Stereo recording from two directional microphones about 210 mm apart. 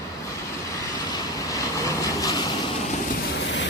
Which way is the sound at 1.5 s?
15° left (ahead or behind).